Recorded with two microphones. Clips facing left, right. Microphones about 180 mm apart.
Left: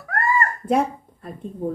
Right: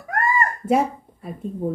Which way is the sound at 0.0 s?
15° right (ahead or behind).